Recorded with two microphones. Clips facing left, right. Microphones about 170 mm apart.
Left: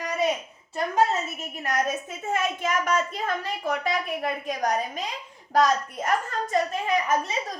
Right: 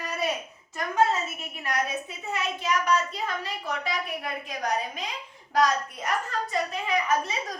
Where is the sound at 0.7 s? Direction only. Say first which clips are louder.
Left 1 dB; 30° left (ahead or behind).